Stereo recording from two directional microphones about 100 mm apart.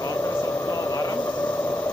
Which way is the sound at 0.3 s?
20° left (ahead or behind).